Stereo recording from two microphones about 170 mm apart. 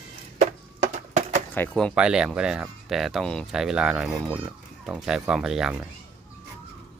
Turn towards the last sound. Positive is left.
turn(degrees=-5)  # may be behind; listen again after turning